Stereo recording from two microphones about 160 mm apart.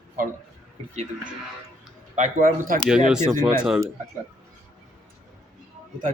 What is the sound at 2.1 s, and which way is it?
Speech, 55° right (ahead or behind).